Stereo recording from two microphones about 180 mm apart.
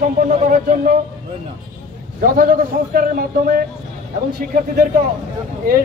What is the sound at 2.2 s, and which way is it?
A man's voice, 55° right (ahead or behind).